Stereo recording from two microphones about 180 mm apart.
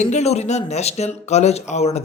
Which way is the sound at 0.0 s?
40° left (ahead or behind).